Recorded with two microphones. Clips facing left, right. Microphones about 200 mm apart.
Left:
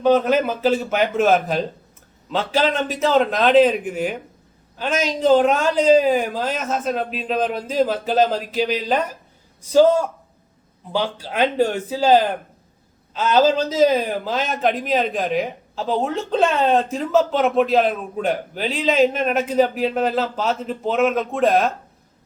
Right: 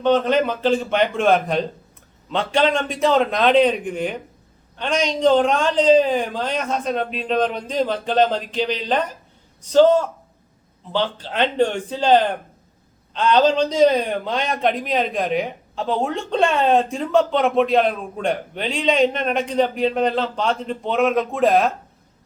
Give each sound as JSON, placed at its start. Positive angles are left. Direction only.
{"t": 0.0, "sound": "a man's voice", "side_deg": 10}